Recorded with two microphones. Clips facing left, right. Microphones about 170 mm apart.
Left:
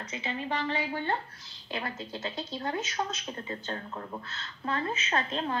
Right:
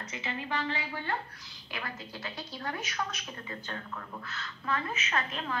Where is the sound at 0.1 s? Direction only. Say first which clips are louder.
Left 3 dB; 25° left (ahead or behind).